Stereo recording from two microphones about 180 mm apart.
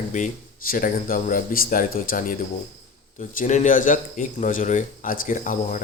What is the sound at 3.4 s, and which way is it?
Speech, 45° left (ahead or behind).